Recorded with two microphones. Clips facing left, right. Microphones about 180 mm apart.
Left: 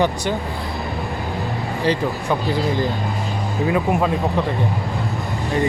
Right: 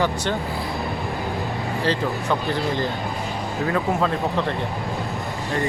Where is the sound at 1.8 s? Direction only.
15° left (ahead or behind).